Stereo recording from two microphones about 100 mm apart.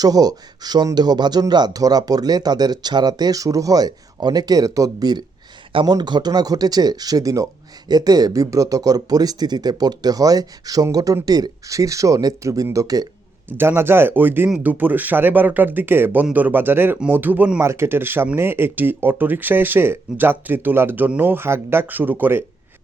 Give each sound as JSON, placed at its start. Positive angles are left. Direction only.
{"t": 0.0, "sound": "speech", "side_deg": -40}
{"t": 13.6, "sound": "speech", "side_deg": -25}